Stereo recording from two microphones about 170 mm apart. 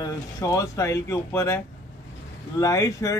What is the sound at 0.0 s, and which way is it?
Speech, 20° left (ahead or behind).